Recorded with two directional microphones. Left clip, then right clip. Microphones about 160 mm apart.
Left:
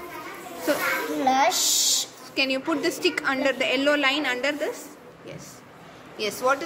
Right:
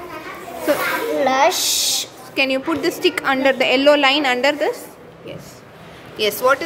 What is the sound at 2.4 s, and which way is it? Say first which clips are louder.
A woman's voice: right 6 dB; 10° right (ahead or behind).